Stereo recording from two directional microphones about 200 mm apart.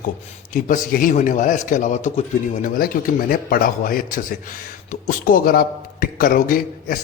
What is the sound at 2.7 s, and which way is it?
A man's voice, 45° left (ahead or behind).